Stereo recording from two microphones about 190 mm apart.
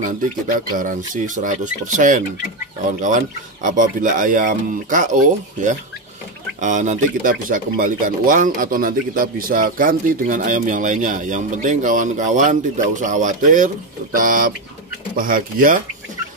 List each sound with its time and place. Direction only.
0.0 s speech: 45° right (ahead or behind)
3.6 s speech: 45° right (ahead or behind)